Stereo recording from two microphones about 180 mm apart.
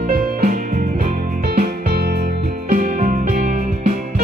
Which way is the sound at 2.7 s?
45° right (ahead or behind).